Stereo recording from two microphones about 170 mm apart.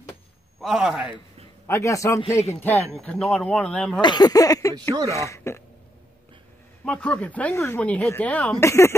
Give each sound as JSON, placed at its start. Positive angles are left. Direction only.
{"t": 0.6, "sound": "a man's voice", "side_deg": 0}
{"t": 1.7, "sound": "speech", "side_deg": 15}
{"t": 4.0, "sound": "speech", "side_deg": 25}
{"t": 4.9, "sound": "speech", "side_deg": -20}
{"t": 5.2, "sound": "speech", "side_deg": 15}
{"t": 6.8, "sound": "speech", "side_deg": 5}